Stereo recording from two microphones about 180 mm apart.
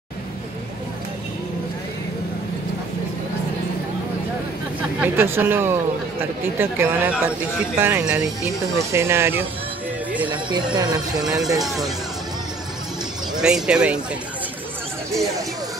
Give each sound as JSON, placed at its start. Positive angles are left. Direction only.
{"t": 5.0, "sound": "speech", "side_deg": -10}
{"t": 10.3, "sound": "speech", "side_deg": -25}
{"t": 11.1, "sound": "speech", "side_deg": -5}
{"t": 13.4, "sound": "speech", "side_deg": -5}